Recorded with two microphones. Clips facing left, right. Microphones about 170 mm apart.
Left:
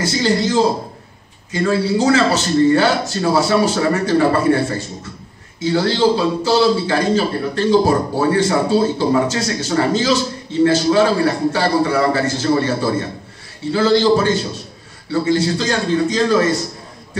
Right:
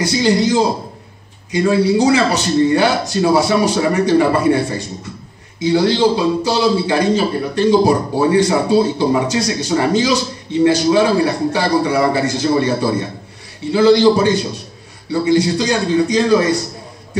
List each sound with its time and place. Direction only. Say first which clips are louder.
0.0 s a man's voice: right 3 dB; 15° right (ahead or behind)